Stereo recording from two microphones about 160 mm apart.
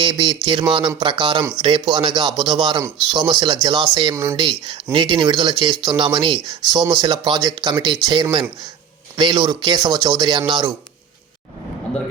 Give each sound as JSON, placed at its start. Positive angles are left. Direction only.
{"t": 0.0, "sound": "speech", "side_deg": -30}